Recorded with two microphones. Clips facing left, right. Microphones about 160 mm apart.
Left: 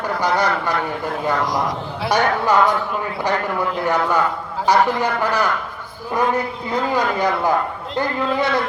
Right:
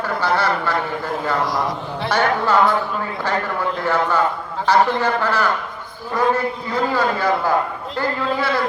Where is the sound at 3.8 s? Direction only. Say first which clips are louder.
Right 1 dB; 15° left (ahead or behind).